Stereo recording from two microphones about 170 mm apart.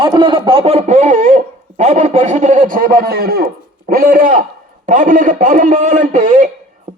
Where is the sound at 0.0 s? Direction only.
25° right (ahead or behind).